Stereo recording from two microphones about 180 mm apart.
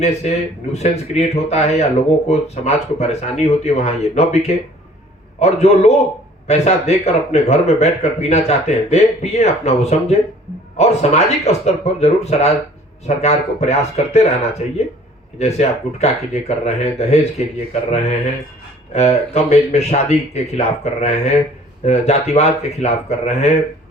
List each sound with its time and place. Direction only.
0.0 s speech: 35° left (ahead or behind)
15.4 s speech: 35° left (ahead or behind)